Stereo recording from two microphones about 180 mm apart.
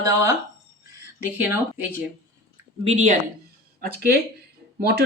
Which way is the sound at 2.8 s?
35° right (ahead or behind).